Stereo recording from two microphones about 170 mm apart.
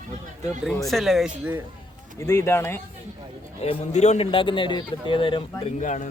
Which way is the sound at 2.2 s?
15° left (ahead or behind).